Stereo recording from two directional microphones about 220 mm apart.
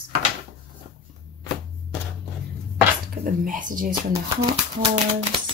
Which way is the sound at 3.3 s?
35° right (ahead or behind).